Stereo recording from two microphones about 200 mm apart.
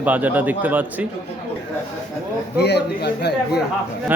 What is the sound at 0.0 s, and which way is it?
A man's voice, 10° right (ahead or behind).